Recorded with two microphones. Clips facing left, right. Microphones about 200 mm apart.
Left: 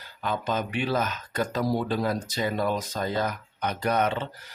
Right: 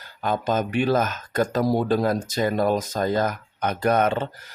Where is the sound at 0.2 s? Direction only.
45° right (ahead or behind).